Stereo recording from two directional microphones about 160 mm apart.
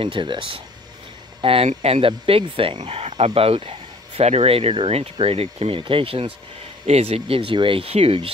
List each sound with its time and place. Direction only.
0.0 s speech: 30° right (ahead or behind)